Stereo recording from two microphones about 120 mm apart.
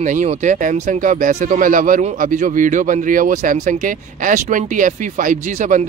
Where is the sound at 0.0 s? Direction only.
90° right.